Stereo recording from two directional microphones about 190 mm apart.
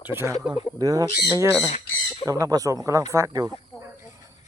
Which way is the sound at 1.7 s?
35° left (ahead or behind).